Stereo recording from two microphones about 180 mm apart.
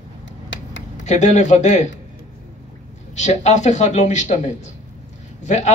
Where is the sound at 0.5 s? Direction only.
90° left.